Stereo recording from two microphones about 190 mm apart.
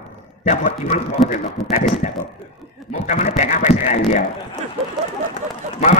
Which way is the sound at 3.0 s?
40° left (ahead or behind).